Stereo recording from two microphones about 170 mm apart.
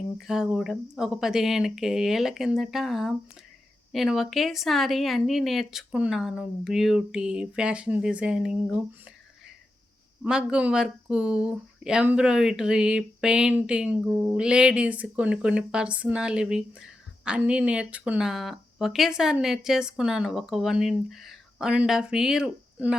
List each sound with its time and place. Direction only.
0.2 s speech: centre (ahead or behind)
10.2 s speech: 5° right (ahead or behind)